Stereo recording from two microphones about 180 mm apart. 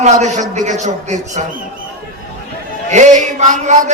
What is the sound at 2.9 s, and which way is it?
A man's voice, 40° right (ahead or behind).